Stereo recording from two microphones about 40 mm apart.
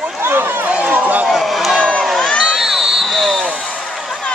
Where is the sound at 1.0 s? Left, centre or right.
Right.